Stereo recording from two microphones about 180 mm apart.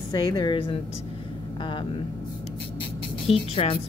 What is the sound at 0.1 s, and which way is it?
A woman's voice, 20° left (ahead or behind).